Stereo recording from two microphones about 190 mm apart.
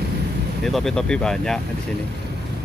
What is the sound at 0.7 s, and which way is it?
Speech, centre (ahead or behind).